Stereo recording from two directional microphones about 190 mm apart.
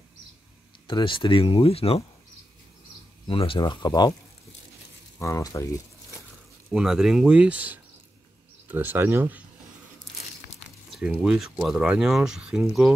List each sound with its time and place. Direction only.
0.8 s speech: 25° left (ahead or behind)
3.3 s speech: 30° left (ahead or behind)
5.2 s speech: 15° left (ahead or behind)
6.7 s speech: centre (ahead or behind)
10.9 s speech: centre (ahead or behind)